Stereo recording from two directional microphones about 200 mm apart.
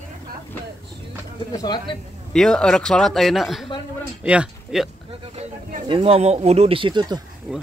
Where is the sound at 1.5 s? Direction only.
20° left (ahead or behind).